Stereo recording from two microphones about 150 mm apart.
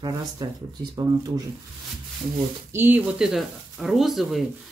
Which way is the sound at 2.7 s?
15° right (ahead or behind).